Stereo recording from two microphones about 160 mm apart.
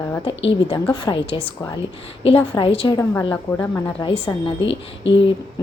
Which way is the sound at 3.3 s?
10° left (ahead or behind).